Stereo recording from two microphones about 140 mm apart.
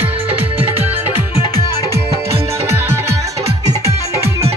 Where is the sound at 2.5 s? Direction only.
20° right (ahead or behind).